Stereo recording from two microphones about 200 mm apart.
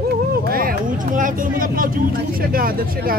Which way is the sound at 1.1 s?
45° right (ahead or behind).